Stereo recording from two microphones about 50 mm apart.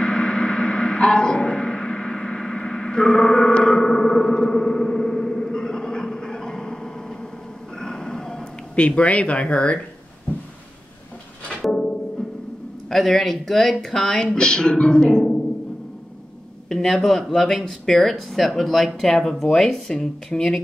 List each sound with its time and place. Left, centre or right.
0.0 s a sound: centre
3.5 s music: centre
7.7 s a sound: centre
8.7 s speech: left
11.6 s music: centre
12.9 s speech: centre
16.6 s speech: centre